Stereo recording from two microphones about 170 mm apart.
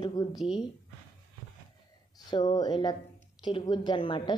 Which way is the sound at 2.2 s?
25° left (ahead or behind).